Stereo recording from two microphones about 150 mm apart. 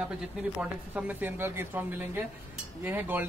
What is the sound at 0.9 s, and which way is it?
Speech, 10° right (ahead or behind).